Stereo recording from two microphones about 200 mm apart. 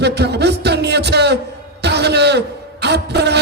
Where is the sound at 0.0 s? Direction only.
55° right (ahead or behind).